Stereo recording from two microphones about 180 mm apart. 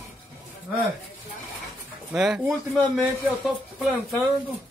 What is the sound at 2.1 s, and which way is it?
Speech, centre (ahead or behind).